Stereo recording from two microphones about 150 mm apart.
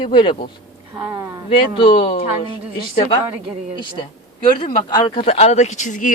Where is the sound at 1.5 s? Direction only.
35° left (ahead or behind).